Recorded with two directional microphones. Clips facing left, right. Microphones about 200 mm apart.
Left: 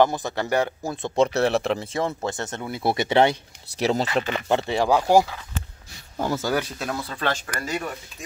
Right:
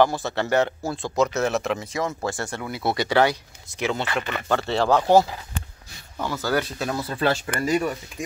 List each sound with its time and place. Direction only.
0.0 s speech: 15° left (ahead or behind)
1.1 s speech: 30° left (ahead or behind)
3.8 s speech: 40° left (ahead or behind)
4.5 s speech: 15° left (ahead or behind)
6.1 s speech: 30° left (ahead or behind)
6.4 s speech: 10° left (ahead or behind)
6.8 s speech: 5° right (ahead or behind)